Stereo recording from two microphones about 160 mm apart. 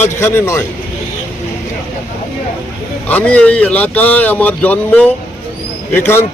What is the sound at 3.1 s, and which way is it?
A man's voice, 10° left (ahead or behind).